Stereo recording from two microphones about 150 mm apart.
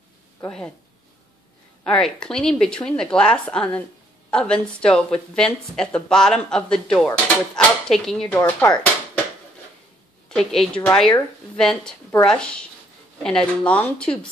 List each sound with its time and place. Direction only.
1.9 s speech: 5° left (ahead or behind)
10.3 s speech: 5° left (ahead or behind)